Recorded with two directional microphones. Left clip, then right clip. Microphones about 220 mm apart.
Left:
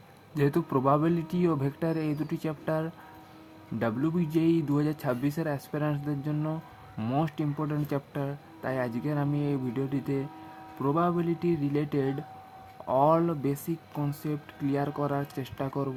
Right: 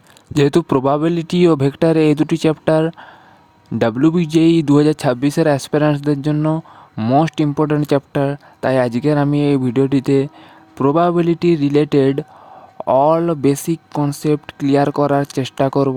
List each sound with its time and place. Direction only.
0.3 s speech: 40° right (ahead or behind)